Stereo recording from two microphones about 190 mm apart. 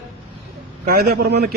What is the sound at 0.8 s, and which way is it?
Speech, 55° right (ahead or behind).